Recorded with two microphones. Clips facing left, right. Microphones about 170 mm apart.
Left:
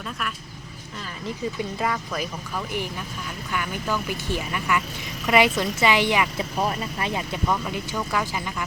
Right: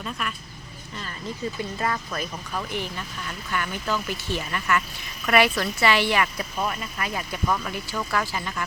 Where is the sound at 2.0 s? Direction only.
5° left (ahead or behind).